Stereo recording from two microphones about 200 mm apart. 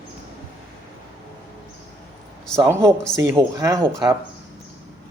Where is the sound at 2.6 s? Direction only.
15° right (ahead or behind).